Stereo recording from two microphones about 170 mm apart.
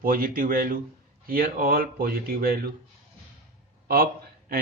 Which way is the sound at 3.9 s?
60° right (ahead or behind).